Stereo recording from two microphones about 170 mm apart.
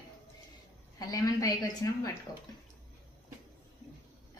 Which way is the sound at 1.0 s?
20° left (ahead or behind).